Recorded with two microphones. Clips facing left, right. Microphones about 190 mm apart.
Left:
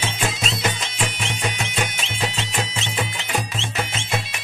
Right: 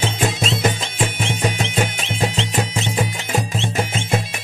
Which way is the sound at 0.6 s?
45° right (ahead or behind).